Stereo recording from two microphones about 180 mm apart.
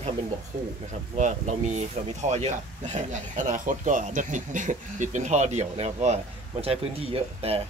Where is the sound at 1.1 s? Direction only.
40° right (ahead or behind).